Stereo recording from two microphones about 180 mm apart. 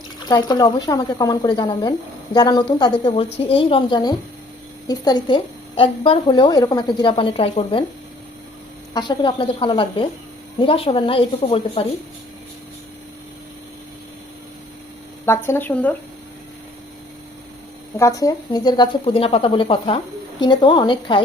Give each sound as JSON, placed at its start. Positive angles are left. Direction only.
{"t": 0.3, "sound": "speech", "side_deg": 20}
{"t": 8.9, "sound": "speech", "side_deg": 25}
{"t": 15.3, "sound": "speech", "side_deg": 10}
{"t": 18.0, "sound": "speech", "side_deg": 20}